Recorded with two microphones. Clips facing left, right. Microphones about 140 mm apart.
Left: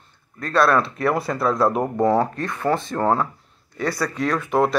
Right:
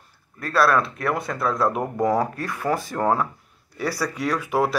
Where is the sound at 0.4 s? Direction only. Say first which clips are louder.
Left 2 dB; 5° right (ahead or behind).